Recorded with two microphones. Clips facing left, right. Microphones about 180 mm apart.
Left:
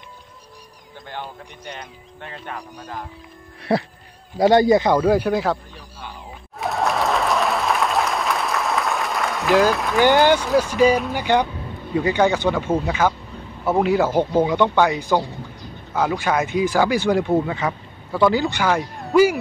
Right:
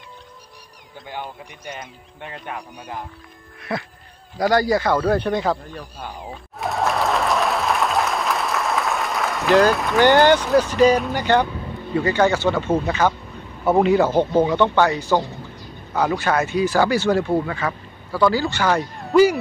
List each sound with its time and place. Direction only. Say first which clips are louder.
3.7 s a sound: left 7 dB; 35° left (ahead or behind)
4.4 s speech: left 4 dB; 25° left (ahead or behind); by 5.6 s 5° left (ahead or behind)
6.6 s applause: even; centre (ahead or behind)
10.6 s speech: right 1 dB; 10° left (ahead or behind)